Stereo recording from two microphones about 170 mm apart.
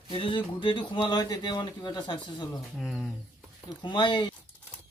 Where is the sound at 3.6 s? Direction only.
30° left (ahead or behind).